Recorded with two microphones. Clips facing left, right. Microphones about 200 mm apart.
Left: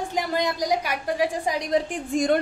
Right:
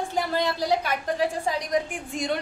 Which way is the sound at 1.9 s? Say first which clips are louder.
Left 6 dB; 45° left (ahead or behind).